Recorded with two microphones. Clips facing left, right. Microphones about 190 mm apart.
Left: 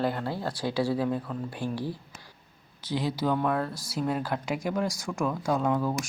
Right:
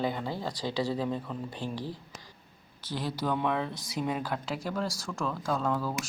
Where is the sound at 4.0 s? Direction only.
5° left (ahead or behind).